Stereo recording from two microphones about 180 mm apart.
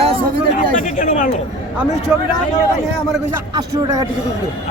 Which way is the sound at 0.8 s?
45° left (ahead or behind).